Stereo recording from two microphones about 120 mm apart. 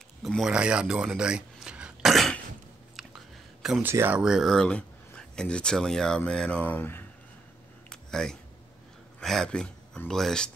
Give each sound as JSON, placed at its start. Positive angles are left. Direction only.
{"t": 0.2, "sound": "speech", "side_deg": 0}
{"t": 3.8, "sound": "speech", "side_deg": -20}
{"t": 4.2, "sound": "speech", "side_deg": -5}
{"t": 7.9, "sound": "a sound", "side_deg": 5}
{"t": 9.2, "sound": "speech", "side_deg": 5}